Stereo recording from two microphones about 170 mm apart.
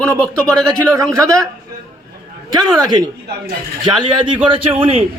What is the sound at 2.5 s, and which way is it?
A man's voice, 25° right (ahead or behind).